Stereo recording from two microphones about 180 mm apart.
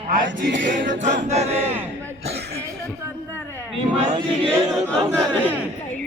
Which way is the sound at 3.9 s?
40° right (ahead or behind).